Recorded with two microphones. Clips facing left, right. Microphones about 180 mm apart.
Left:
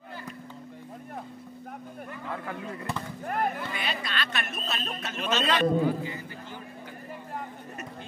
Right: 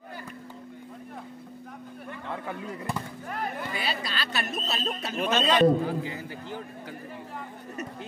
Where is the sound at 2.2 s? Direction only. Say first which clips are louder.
Right 1 dB; 5° right (ahead or behind).